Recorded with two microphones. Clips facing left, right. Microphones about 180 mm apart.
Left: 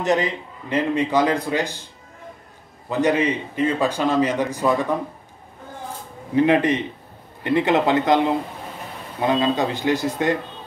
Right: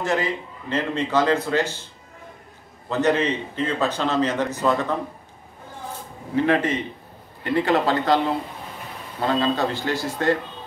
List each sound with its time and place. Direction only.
0.0 s a man's voice: 20° left (ahead or behind)
2.9 s a man's voice: 10° left (ahead or behind)
6.3 s a man's voice: 15° left (ahead or behind)